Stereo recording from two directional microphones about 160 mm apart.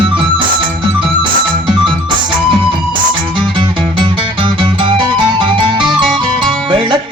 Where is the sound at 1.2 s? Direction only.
30° right (ahead or behind).